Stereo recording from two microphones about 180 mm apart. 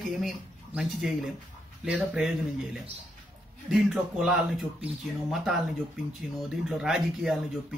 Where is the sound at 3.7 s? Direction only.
Centre (ahead or behind).